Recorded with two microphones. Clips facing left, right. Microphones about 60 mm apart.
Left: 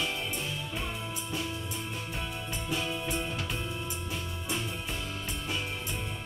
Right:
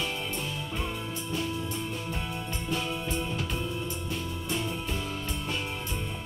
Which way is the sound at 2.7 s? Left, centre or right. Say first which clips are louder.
Right 1 dB; centre.